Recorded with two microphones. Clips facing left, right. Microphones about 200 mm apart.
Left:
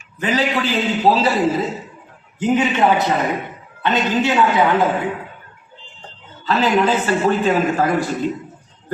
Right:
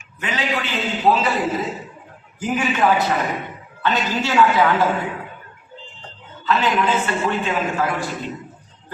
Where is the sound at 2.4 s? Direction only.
20° left (ahead or behind).